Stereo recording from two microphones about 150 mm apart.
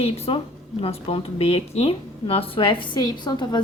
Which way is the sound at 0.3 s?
35° left (ahead or behind).